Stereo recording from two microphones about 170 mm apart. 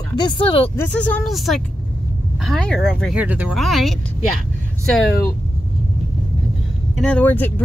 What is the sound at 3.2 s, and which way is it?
Speech, 10° right (ahead or behind).